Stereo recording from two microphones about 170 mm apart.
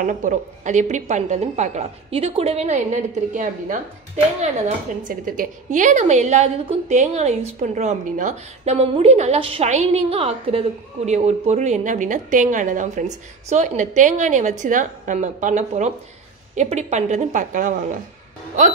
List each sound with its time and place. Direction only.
0.0 s a woman's voice: 50° right (ahead or behind)